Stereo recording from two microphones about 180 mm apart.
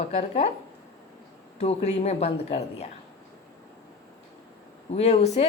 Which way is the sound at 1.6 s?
35° left (ahead or behind).